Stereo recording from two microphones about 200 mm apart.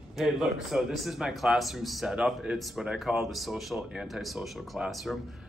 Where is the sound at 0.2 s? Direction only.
Centre (ahead or behind).